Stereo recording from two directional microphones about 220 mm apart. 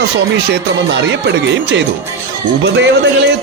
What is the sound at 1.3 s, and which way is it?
Speech, 55° right (ahead or behind).